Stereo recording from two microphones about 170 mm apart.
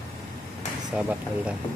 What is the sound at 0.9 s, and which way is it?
Speech, 5° right (ahead or behind).